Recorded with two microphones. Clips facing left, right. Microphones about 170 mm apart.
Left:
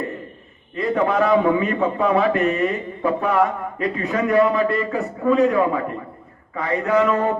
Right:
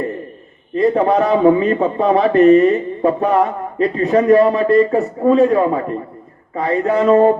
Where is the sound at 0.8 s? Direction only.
35° right (ahead or behind).